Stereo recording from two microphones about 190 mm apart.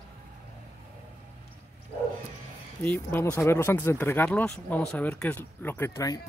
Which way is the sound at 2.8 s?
10° left (ahead or behind).